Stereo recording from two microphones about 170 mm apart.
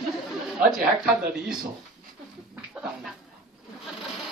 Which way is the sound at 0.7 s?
5° right (ahead or behind).